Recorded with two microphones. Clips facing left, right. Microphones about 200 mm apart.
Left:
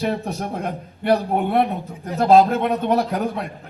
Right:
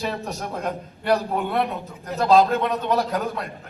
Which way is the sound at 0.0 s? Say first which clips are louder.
Left 5 dB; 55° left (ahead or behind).